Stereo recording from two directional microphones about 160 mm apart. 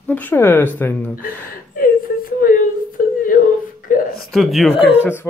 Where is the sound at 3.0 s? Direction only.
60° left (ahead or behind).